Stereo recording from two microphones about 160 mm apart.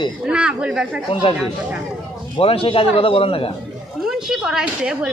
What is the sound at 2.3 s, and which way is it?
A man's voice, 35° left (ahead or behind).